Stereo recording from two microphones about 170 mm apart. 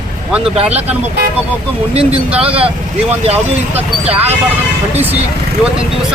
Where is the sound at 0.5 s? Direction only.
35° right (ahead or behind).